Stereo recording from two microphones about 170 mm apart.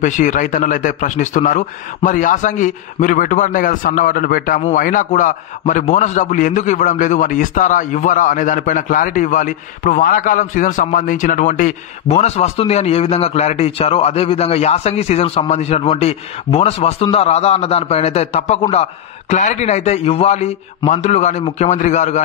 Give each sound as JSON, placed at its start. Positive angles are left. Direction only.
{"t": 0.0, "sound": "a man's voice", "side_deg": 50}